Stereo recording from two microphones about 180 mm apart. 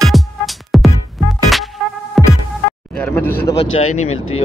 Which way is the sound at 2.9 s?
10° left (ahead or behind).